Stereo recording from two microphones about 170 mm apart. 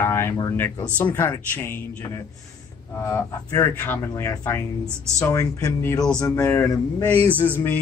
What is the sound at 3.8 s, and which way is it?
A man's voice, 10° left (ahead or behind).